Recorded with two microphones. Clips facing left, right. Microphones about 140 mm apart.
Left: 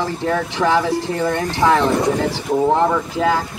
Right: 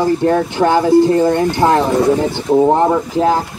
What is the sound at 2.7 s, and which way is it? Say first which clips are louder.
Speech: right 4 dB; 30° right (ahead or behind).